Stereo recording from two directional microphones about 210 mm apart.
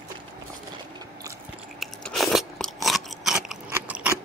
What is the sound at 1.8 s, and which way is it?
Biting, centre (ahead or behind).